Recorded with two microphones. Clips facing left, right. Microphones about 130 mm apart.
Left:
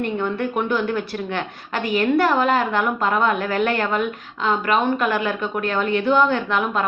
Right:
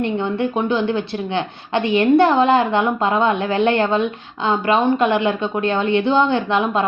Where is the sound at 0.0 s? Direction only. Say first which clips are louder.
Right 3 dB; 25° right (ahead or behind).